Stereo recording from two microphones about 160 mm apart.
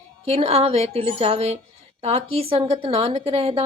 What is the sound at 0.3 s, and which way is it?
A woman's voice, 40° right (ahead or behind).